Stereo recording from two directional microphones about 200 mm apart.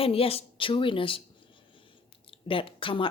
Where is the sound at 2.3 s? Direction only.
25° left (ahead or behind).